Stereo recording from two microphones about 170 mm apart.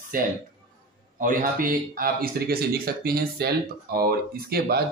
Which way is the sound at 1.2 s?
55° right (ahead or behind).